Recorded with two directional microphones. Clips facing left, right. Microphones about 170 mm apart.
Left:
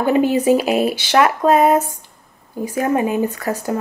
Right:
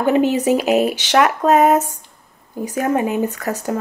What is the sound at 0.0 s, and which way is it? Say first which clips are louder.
Speech: even; 10° left (ahead or behind).